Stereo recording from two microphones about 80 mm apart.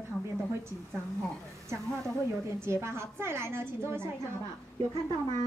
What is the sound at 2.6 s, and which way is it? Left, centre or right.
A woman's voice, right.